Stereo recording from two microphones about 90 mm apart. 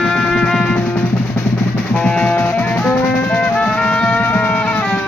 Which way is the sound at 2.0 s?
15° left (ahead or behind).